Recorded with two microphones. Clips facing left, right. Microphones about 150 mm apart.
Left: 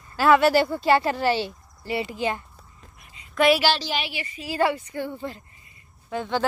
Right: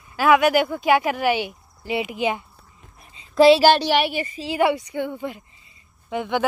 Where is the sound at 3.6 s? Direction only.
60° right (ahead or behind).